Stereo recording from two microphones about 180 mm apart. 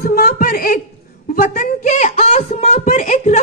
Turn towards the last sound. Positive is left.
turn(degrees=45)  # may be behind; listen again after turning